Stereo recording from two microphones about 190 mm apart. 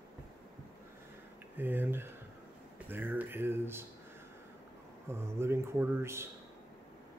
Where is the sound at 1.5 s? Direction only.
10° right (ahead or behind).